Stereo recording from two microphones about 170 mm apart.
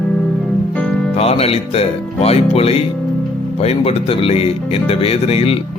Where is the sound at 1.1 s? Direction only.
35° left (ahead or behind).